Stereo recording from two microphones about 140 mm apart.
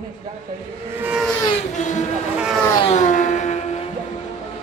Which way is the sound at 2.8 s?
60° left (ahead or behind).